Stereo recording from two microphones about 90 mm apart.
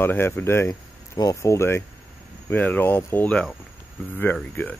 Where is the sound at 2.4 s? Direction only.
20° left (ahead or behind).